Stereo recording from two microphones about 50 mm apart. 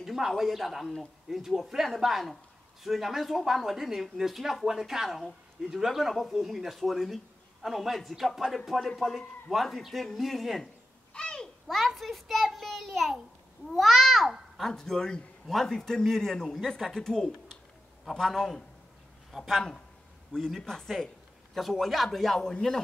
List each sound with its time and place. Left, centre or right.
0.0 s speech: centre
11.1 s babbling: centre
11.6 s a child's voice: centre
14.7 s speech: centre